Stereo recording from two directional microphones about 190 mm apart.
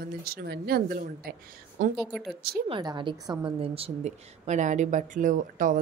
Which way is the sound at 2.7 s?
25° right (ahead or behind).